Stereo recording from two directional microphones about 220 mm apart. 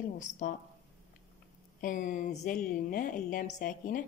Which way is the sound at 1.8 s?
35° left (ahead or behind).